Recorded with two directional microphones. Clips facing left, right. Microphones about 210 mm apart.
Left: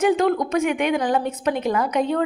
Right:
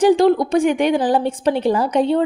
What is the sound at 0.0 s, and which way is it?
A woman's voice, 30° right (ahead or behind).